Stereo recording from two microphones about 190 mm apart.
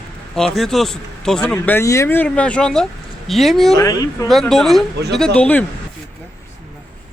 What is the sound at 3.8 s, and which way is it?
Speech, 20° left (ahead or behind).